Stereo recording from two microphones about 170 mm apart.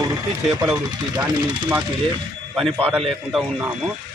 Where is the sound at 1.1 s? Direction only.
25° right (ahead or behind).